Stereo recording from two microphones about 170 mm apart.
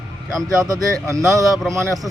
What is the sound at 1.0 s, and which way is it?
Speech, 20° right (ahead or behind).